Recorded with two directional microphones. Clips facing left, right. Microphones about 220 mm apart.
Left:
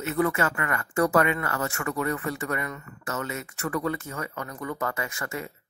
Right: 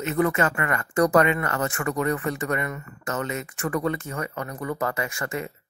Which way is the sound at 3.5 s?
30° right (ahead or behind).